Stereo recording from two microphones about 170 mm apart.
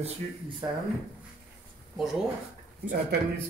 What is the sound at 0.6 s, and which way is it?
Speech, 20° right (ahead or behind).